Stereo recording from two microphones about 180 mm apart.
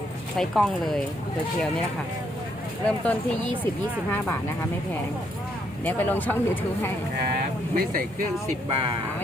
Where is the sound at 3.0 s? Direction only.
10° left (ahead or behind).